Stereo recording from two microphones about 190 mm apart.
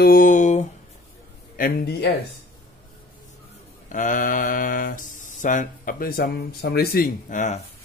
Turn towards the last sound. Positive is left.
turn(degrees=40)  # may be behind; listen again after turning